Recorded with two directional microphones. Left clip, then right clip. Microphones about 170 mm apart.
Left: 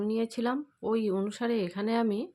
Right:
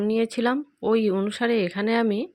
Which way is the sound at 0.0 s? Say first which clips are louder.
Right 7 dB; 40° right (ahead or behind).